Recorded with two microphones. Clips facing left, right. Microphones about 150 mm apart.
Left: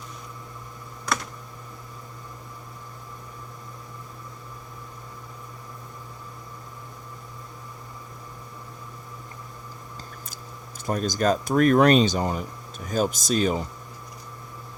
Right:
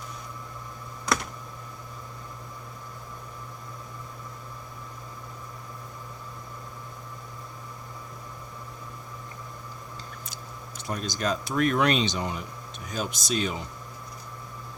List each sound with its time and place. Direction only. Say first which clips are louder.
10.8 s speech: left 6 dB; 45° left (ahead or behind)